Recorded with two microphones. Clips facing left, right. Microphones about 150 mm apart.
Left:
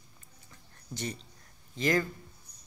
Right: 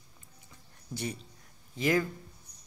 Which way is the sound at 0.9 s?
10° right (ahead or behind).